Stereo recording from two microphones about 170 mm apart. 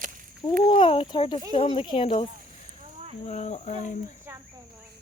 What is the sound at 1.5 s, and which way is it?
Speech, 35° left (ahead or behind).